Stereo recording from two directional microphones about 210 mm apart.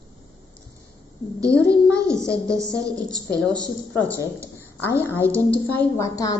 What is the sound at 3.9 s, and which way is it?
A woman's voice, 10° left (ahead or behind).